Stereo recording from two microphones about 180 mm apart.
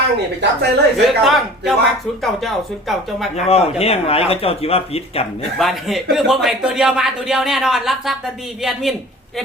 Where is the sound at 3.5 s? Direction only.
35° left (ahead or behind).